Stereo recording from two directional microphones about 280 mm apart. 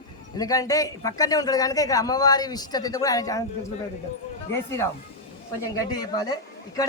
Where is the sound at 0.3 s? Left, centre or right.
Centre.